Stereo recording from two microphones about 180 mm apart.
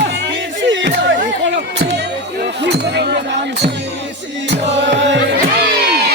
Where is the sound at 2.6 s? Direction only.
65° right (ahead or behind).